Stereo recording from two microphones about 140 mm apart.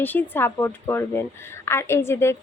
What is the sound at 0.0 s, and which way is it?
A woman's voice, 15° left (ahead or behind).